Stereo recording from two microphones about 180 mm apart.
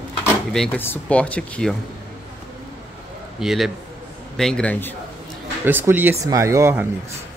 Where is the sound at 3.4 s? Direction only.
Centre (ahead or behind).